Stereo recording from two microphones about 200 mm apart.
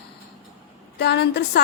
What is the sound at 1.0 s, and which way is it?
Speech, 55° left (ahead or behind).